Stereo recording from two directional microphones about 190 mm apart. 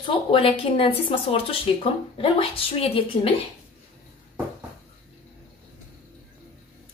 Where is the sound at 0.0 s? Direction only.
30° left (ahead or behind).